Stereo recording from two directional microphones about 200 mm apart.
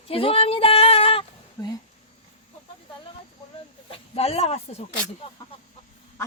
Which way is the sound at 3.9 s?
30° left (ahead or behind).